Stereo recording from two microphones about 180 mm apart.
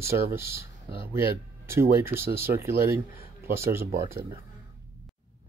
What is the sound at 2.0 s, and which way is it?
Speech, 15° right (ahead or behind).